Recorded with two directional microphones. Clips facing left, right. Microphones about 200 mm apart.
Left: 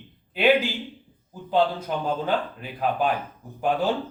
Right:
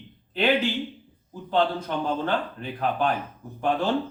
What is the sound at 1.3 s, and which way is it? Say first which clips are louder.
A man's voice: left 1 dB; 10° left (ahead or behind).